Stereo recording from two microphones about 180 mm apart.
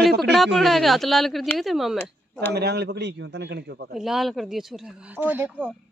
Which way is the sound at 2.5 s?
65° right (ahead or behind).